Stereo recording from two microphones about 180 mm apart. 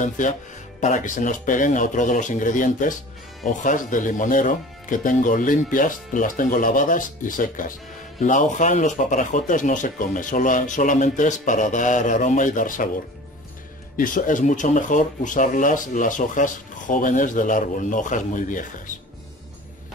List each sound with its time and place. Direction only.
0.7 s speech: 45° left (ahead or behind)
13.9 s speech: 50° left (ahead or behind)